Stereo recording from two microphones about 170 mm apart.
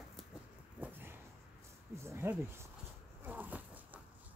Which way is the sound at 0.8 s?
10° right (ahead or behind).